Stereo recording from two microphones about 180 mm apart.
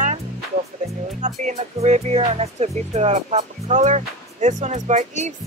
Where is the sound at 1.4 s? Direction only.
40° right (ahead or behind).